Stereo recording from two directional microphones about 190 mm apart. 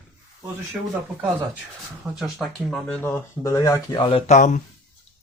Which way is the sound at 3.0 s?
15° left (ahead or behind).